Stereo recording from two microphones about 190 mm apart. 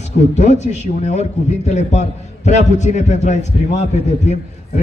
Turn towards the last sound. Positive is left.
turn(degrees=35)  # may be behind; listen again after turning